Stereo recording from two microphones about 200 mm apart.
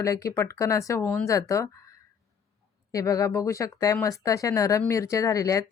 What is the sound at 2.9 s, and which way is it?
Speech, 15° left (ahead or behind).